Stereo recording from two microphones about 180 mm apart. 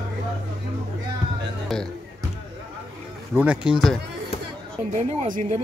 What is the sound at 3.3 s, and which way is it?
Speech, 10° right (ahead or behind).